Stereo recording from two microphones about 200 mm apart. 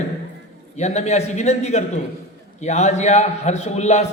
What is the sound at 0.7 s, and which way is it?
A man's voice, 35° left (ahead or behind).